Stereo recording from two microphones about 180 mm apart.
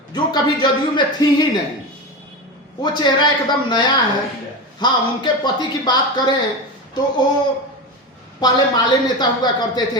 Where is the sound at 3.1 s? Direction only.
25° left (ahead or behind).